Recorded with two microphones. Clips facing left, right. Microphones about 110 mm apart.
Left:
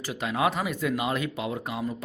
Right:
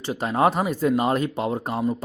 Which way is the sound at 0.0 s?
35° right (ahead or behind).